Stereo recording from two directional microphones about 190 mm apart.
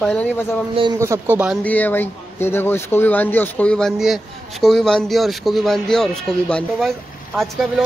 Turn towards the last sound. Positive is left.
turn(degrees=0)  # may be behind; listen again after turning